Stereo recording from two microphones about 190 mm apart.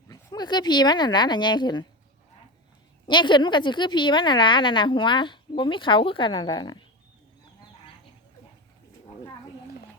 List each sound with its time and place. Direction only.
0.1 s speech: 20° left (ahead or behind)
3.1 s a woman's voice: 25° left (ahead or behind)